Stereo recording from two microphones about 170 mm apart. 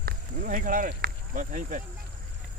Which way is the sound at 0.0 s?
55° right (ahead or behind).